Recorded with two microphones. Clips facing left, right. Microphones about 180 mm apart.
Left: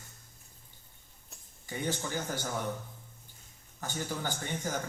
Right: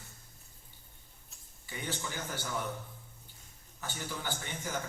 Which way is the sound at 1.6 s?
45° left (ahead or behind).